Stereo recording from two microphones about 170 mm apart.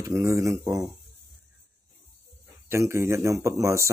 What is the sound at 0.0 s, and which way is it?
Speech, 15° right (ahead or behind).